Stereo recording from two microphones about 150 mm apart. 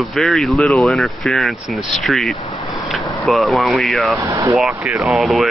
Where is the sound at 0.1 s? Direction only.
Centre (ahead or behind).